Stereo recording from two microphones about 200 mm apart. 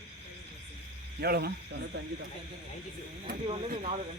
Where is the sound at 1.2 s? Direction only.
50° right (ahead or behind).